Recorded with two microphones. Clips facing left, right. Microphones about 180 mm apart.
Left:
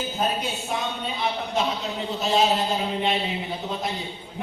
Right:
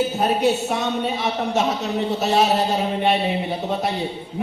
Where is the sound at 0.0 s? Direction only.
70° right (ahead or behind).